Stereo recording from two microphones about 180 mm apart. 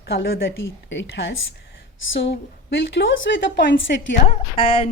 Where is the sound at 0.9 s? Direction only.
80° left.